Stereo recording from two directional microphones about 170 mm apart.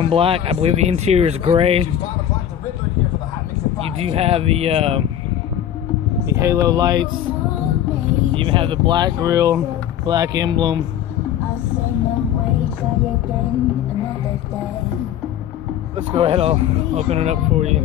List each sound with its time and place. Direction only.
0.0 s speech: 35° right (ahead or behind)
4.0 s speech: 35° right (ahead or behind)
6.3 s speech: 20° right (ahead or behind)
8.4 s speech: 30° right (ahead or behind)
16.1 s speech: 35° right (ahead or behind)